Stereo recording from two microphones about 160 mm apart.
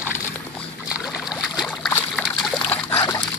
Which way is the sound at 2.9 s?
20° left (ahead or behind).